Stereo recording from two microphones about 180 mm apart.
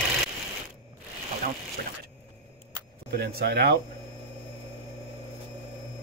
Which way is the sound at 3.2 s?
60° right (ahead or behind).